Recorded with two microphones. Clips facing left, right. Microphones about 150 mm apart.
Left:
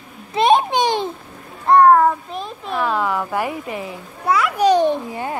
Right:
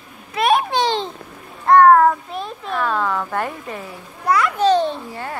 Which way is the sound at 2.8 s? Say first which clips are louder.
Left 1 dB; 15° left (ahead or behind).